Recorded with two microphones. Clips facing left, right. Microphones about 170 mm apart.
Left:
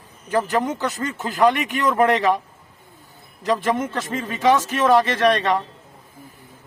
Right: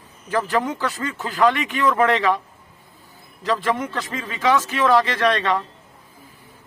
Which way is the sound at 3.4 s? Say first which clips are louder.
Left 1 dB; 20° left (ahead or behind).